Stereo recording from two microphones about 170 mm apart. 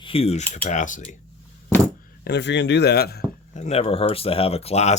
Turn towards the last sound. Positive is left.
turn(degrees=40)  # may be behind; listen again after turning